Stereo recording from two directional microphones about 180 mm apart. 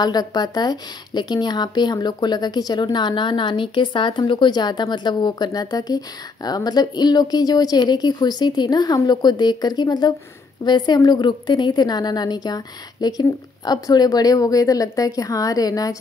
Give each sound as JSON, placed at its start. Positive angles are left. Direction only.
{"t": 0.0, "sound": "a woman's voice", "side_deg": 20}